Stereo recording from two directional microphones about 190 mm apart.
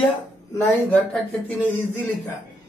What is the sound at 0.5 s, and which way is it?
Speech, 15° left (ahead or behind).